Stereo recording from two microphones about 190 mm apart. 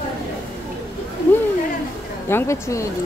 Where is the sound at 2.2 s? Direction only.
15° left (ahead or behind).